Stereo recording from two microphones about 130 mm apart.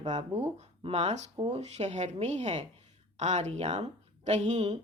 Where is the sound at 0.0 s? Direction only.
60° right (ahead or behind).